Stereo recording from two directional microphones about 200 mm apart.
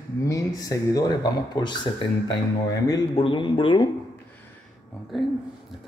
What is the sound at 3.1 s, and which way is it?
Speech, 25° left (ahead or behind).